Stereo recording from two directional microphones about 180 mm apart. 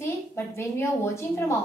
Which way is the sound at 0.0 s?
15° left (ahead or behind).